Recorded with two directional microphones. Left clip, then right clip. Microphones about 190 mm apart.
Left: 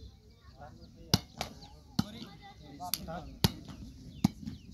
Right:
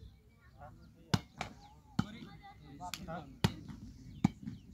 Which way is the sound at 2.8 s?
20° left (ahead or behind).